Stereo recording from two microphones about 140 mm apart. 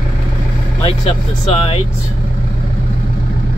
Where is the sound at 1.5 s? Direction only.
45° left (ahead or behind).